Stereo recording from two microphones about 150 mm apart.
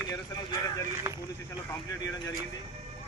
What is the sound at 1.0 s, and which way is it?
Speech, 15° right (ahead or behind).